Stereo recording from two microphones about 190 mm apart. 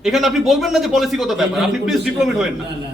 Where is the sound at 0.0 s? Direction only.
Centre (ahead or behind).